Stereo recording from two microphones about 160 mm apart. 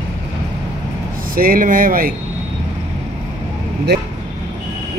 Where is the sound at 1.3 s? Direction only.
60° right (ahead or behind).